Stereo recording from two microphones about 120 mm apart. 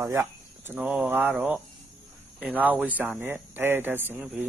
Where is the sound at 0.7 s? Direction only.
10° right (ahead or behind).